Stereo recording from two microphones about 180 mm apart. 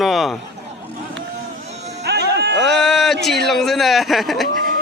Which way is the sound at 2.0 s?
65° right (ahead or behind).